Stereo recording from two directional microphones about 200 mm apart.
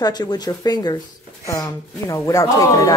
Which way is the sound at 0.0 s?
20° left (ahead or behind).